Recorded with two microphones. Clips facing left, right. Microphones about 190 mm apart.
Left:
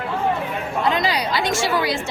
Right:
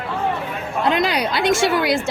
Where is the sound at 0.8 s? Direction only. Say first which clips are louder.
Right 3 dB; 60° right (ahead or behind).